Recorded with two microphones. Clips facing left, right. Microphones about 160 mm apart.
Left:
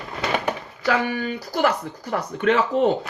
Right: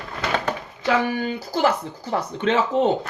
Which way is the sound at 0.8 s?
30° right (ahead or behind).